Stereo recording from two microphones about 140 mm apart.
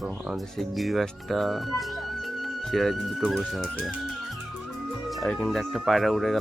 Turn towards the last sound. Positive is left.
turn(degrees=0)  # may be behind; listen again after turning